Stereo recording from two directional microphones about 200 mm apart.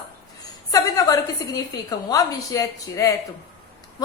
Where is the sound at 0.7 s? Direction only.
15° left (ahead or behind).